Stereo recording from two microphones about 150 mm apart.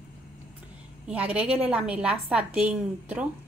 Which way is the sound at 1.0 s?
10° right (ahead or behind).